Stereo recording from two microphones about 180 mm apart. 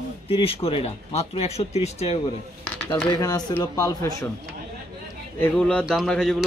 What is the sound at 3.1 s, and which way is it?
Speech, 20° left (ahead or behind).